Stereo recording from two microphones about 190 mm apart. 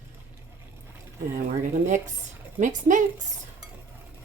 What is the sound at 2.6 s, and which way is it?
Speech, 40° right (ahead or behind).